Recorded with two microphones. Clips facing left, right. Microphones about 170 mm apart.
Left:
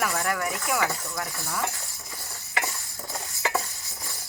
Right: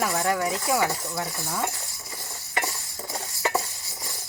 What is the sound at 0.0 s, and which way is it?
Speech, 25° right (ahead or behind).